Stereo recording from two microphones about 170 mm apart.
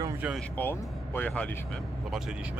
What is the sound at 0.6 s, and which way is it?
Speech, 10° left (ahead or behind).